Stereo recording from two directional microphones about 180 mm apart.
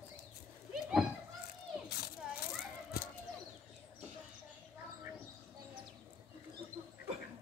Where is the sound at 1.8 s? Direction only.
65° left (ahead or behind).